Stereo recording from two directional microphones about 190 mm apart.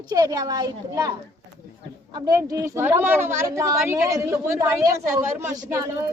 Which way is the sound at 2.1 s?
20° right (ahead or behind).